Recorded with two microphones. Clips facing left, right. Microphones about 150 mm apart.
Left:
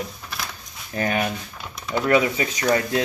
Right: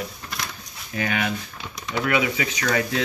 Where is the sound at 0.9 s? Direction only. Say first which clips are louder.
Left 2 dB; 40° left (ahead or behind).